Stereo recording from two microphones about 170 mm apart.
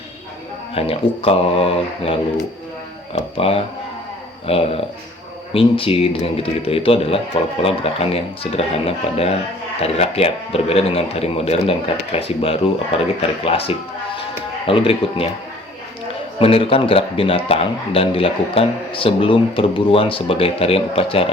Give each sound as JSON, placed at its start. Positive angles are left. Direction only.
{"t": 0.7, "sound": "a man's voice", "side_deg": 35}
{"t": 3.2, "sound": "a man's voice", "side_deg": 35}
{"t": 16.4, "sound": "a man's voice", "side_deg": 35}